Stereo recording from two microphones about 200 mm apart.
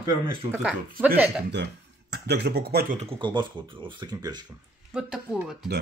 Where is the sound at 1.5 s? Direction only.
55° right (ahead or behind).